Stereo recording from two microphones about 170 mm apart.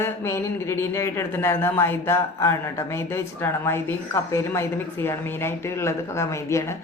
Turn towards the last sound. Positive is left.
turn(degrees=15)  # may be behind; listen again after turning